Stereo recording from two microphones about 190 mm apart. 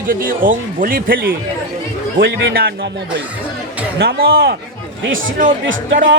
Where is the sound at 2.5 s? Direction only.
55° right (ahead or behind).